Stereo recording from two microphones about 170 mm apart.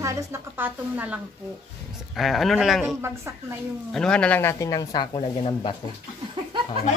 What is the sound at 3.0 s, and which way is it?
Speech, 15° right (ahead or behind).